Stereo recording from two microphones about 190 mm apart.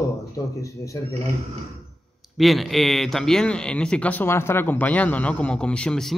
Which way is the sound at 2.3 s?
Centre (ahead or behind).